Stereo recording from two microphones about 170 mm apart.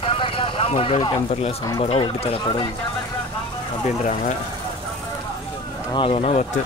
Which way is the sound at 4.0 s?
45° left (ahead or behind).